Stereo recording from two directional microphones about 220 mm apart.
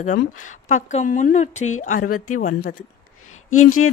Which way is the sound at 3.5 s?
75° left (ahead or behind).